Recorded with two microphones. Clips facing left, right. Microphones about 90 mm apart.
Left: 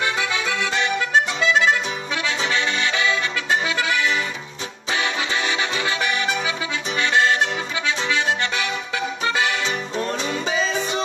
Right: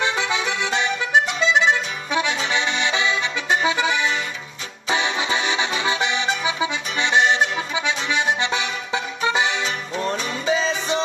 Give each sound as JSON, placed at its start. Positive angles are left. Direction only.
{"t": 0.0, "sound": "accordion", "side_deg": -20}
{"t": 4.8, "sound": "music", "side_deg": -20}
{"t": 10.1, "sound": "music", "side_deg": 30}